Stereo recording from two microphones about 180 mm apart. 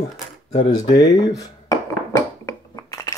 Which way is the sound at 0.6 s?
20° left (ahead or behind).